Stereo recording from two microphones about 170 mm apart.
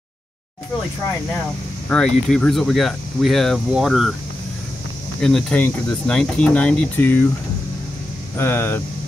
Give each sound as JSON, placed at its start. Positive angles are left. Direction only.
{"t": 1.9, "sound": "speech", "side_deg": 5}
{"t": 5.2, "sound": "speech", "side_deg": 5}
{"t": 8.4, "sound": "speech", "side_deg": 15}